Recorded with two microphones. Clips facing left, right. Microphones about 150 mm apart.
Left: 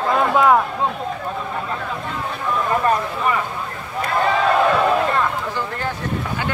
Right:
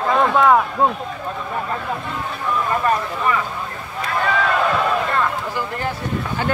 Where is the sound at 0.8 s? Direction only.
50° right (ahead or behind).